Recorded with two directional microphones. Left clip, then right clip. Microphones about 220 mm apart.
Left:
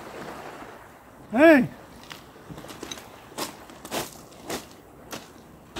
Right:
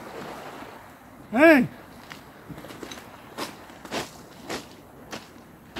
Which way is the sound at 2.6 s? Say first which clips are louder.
Left 1 dB; 50° left (ahead or behind).